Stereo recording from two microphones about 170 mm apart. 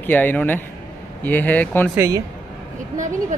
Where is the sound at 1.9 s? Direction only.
15° right (ahead or behind).